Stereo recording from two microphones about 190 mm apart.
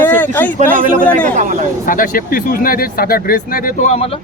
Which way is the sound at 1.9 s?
45° left (ahead or behind).